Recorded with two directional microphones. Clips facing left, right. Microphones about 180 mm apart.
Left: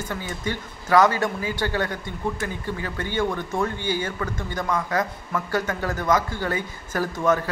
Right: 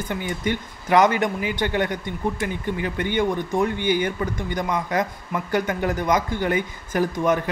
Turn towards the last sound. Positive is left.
turn(degrees=-15)  # may be behind; listen again after turning